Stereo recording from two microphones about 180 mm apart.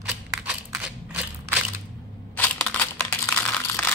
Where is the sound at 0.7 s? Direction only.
10° right (ahead or behind).